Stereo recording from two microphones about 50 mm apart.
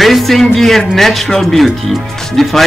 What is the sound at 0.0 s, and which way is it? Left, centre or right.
Speech, centre.